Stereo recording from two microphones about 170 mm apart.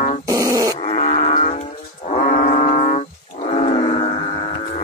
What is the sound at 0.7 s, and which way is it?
Livestock, 40° left (ahead or behind).